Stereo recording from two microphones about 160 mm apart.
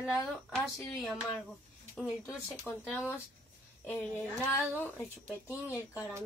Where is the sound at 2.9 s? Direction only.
15° left (ahead or behind).